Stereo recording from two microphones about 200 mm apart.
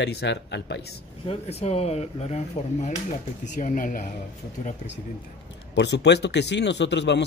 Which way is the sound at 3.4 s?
40° left (ahead or behind).